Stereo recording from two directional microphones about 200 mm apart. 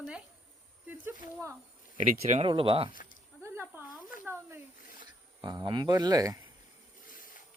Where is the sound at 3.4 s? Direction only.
10° right (ahead or behind).